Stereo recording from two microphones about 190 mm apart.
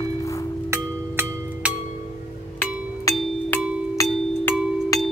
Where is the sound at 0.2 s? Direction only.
15° left (ahead or behind).